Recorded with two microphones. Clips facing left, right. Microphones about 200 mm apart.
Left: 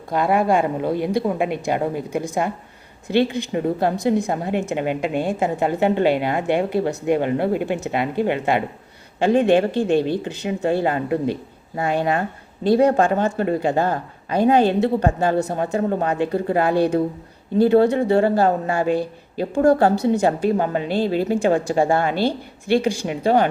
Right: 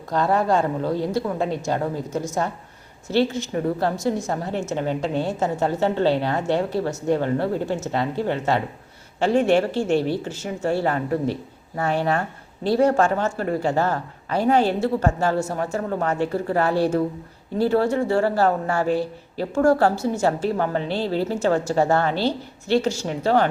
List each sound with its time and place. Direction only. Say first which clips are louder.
0.1 s a woman's voice: left 2 dB; 10° left (ahead or behind)